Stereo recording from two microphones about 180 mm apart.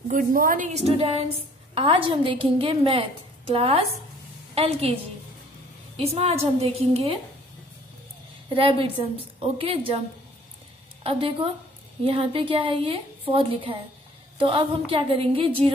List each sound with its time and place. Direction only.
0.1 s a woman's voice: 50° right (ahead or behind); by 4.9 s 35° right (ahead or behind)
5.9 s a woman's voice: 35° right (ahead or behind)
8.5 s a woman's voice: 30° right (ahead or behind)
11.1 s a woman's voice: 30° right (ahead or behind)